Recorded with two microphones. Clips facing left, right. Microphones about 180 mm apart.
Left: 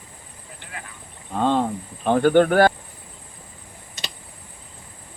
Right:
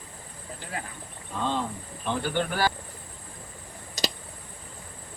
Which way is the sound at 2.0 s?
55° left (ahead or behind).